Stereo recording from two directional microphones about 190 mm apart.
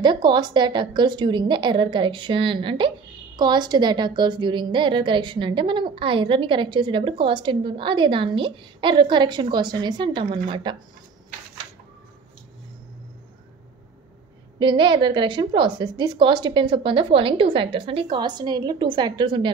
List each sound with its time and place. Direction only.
0.0 s a woman's voice: 25° right (ahead or behind)
14.6 s a woman's voice: 25° right (ahead or behind)